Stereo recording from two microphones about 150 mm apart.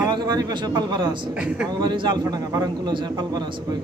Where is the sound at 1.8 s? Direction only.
30° right (ahead or behind).